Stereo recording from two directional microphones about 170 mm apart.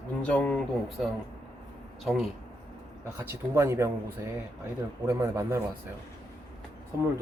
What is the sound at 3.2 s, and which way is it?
Speech, 15° right (ahead or behind).